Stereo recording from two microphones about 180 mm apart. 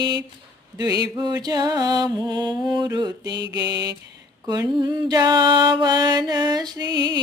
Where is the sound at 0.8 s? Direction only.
20° right (ahead or behind).